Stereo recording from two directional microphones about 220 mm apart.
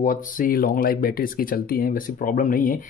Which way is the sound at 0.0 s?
40° left (ahead or behind).